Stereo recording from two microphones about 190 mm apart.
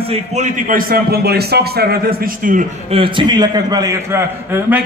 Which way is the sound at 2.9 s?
25° right (ahead or behind).